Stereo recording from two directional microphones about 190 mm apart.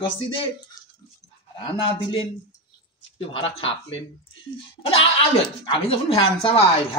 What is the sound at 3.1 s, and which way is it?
Speech, 30° left (ahead or behind).